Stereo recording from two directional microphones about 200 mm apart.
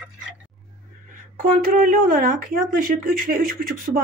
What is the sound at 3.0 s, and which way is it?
Speech, 45° right (ahead or behind).